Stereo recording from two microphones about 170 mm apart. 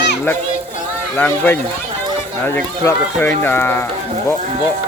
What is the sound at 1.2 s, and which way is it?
Speech, 10° left (ahead or behind).